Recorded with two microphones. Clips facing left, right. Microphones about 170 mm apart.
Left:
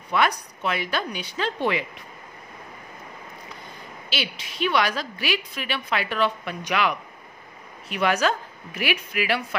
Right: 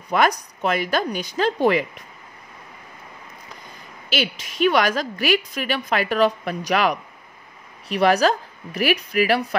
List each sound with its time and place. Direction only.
0.1 s a woman's voice: 40° right (ahead or behind)
4.1 s a woman's voice: 45° right (ahead or behind)